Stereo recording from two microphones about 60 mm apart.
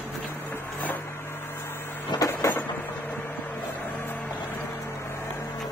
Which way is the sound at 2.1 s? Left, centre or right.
Left.